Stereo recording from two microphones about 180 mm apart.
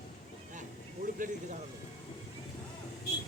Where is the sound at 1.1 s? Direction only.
45° right (ahead or behind).